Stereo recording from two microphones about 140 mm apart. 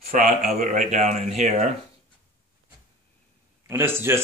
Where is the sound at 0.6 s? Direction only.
65° right (ahead or behind).